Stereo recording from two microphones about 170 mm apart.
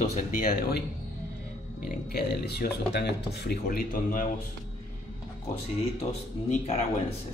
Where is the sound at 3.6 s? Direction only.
55° left (ahead or behind).